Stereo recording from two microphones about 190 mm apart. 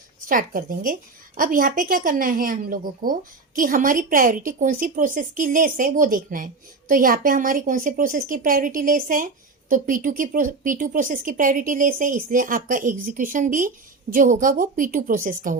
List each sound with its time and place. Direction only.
0.3 s a woman's voice: 45° right (ahead or behind)